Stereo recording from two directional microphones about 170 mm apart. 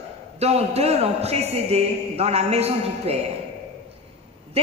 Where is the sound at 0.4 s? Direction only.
35° right (ahead or behind).